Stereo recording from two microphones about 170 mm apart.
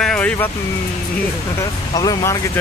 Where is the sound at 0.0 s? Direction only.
5° left (ahead or behind).